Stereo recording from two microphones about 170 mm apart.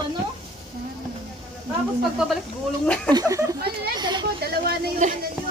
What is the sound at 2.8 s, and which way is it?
Speech, 5° left (ahead or behind).